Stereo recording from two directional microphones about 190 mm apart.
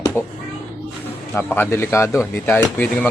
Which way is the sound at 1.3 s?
10° left (ahead or behind).